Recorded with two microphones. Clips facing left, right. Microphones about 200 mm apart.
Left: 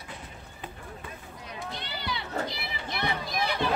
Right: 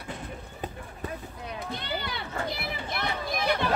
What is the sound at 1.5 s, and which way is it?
Run, 55° right (ahead or behind).